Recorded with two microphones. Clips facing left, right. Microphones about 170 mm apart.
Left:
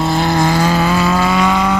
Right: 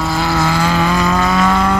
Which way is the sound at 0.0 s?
20° left (ahead or behind).